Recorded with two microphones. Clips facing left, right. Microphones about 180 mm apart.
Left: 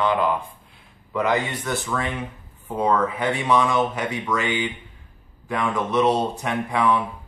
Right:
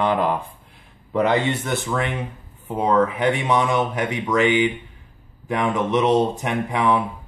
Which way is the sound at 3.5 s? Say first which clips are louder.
Even; 20° right (ahead or behind).